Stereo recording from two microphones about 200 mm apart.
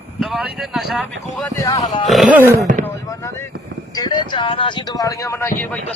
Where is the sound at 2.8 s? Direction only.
15° left (ahead or behind).